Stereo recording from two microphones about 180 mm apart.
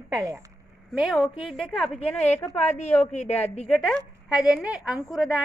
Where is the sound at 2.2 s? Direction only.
15° left (ahead or behind).